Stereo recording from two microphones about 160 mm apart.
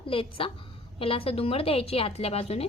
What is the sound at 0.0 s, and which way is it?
A woman's voice, 35° left (ahead or behind).